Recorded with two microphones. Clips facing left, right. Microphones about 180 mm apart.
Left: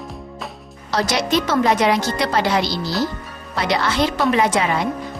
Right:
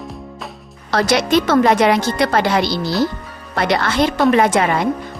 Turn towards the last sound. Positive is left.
turn(degrees=-55)  # may be behind; listen again after turning